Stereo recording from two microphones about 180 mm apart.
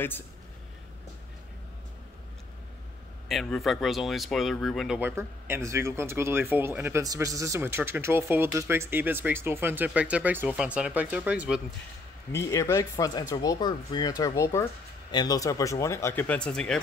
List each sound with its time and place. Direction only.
3.3 s speech: centre (ahead or behind)
5.1 s speech: 15° right (ahead or behind)
12.3 s speech: 15° left (ahead or behind)